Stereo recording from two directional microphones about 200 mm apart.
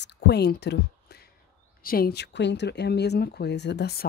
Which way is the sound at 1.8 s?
50° left (ahead or behind).